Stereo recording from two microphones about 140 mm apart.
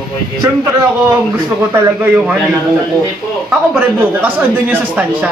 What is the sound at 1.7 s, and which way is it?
Speech, 15° right (ahead or behind).